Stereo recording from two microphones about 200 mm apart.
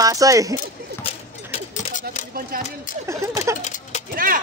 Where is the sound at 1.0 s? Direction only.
35° left (ahead or behind).